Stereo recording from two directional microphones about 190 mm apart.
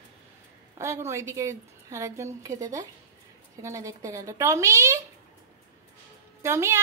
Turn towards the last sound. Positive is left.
turn(degrees=-15)  # may be behind; listen again after turning